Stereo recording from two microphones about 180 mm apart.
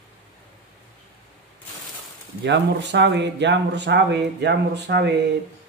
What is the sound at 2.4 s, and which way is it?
Speech, 75° right (ahead or behind).